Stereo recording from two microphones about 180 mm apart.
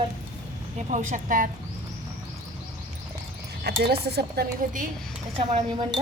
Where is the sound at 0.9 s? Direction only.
45° right (ahead or behind).